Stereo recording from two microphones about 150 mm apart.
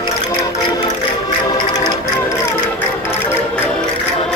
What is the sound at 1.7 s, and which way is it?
Music, 25° left (ahead or behind).